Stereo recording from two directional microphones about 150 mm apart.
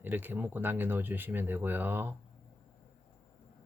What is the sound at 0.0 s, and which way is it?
Speech, 10° right (ahead or behind).